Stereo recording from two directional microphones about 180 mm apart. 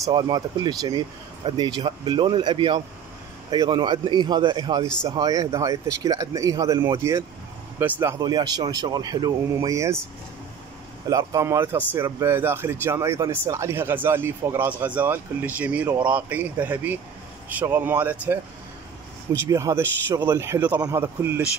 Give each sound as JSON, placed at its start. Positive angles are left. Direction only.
{"t": 0.0, "sound": "speech", "side_deg": -20}
{"t": 11.1, "sound": "speech", "side_deg": -20}
{"t": 19.5, "sound": "speech", "side_deg": -15}